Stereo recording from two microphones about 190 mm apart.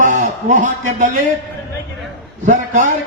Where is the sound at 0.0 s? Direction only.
40° right (ahead or behind).